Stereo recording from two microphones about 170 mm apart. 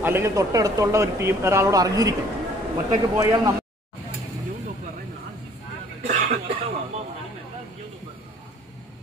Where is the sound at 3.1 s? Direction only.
20° right (ahead or behind).